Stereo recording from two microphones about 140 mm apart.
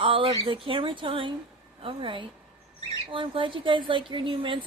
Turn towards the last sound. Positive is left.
turn(degrees=-35)  # may be behind; listen again after turning